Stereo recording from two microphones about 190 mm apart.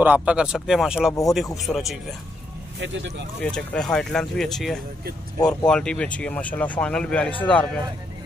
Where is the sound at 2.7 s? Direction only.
75° right (ahead or behind).